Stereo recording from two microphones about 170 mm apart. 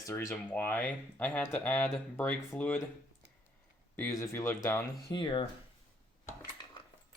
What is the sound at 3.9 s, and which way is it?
Speech, 15° left (ahead or behind).